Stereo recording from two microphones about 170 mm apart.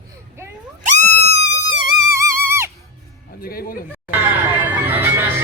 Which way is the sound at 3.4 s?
60° left (ahead or behind).